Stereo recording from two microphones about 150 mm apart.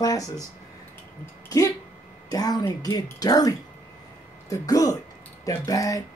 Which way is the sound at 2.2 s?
25° left (ahead or behind).